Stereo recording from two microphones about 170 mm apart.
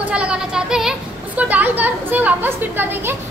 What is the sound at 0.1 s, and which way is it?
A woman's voice, 5° right (ahead or behind).